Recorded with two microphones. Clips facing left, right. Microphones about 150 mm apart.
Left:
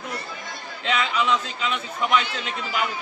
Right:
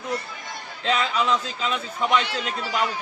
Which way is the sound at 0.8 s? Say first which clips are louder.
Right 1 dB; 35° right (ahead or behind).